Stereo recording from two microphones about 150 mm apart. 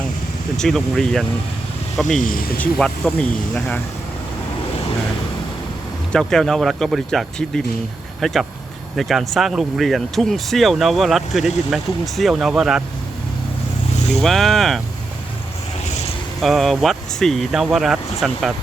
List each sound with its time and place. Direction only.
0.5 s speech: 5° left (ahead or behind)
2.1 s speech: 70° left (ahead or behind)
2.6 s speech: 5° left (ahead or behind)
6.1 s speech: 5° left (ahead or behind)
14.2 s speech: centre (ahead or behind)
16.4 s speech: centre (ahead or behind)